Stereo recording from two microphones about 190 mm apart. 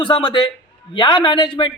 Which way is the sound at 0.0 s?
25° left (ahead or behind).